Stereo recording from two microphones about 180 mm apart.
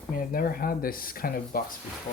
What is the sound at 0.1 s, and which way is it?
Speech, 50° left (ahead or behind).